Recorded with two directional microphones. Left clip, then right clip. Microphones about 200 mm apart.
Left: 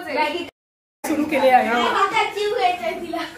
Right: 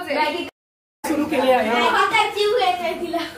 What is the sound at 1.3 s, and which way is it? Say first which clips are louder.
Speech: left 3 dB; 30° left (ahead or behind).